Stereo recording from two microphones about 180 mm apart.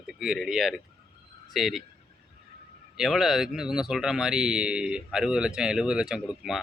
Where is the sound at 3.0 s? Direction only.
Centre (ahead or behind).